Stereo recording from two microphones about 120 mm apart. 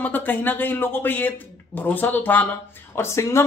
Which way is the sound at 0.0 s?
15° left (ahead or behind).